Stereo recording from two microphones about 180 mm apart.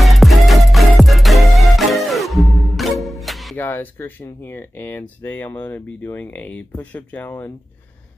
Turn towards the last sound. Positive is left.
turn(degrees=10)  # may be behind; listen again after turning